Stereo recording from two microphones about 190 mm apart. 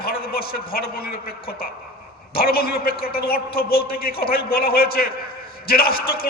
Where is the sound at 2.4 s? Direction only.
50° left (ahead or behind).